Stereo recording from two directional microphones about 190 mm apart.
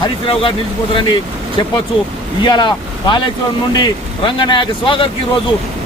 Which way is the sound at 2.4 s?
25° left (ahead or behind).